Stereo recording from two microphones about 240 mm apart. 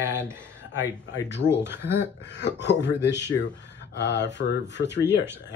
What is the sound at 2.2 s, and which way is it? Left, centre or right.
Speech, left.